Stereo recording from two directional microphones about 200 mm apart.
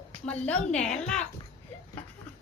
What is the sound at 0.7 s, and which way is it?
Speech, 5° left (ahead or behind).